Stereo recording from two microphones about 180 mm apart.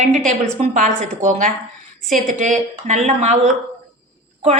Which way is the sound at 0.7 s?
40° right (ahead or behind).